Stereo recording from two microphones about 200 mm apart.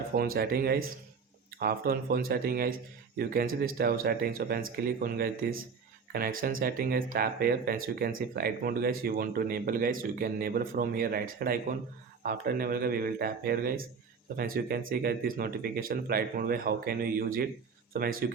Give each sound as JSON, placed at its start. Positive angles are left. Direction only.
{"t": 0.1, "sound": "speech", "side_deg": -45}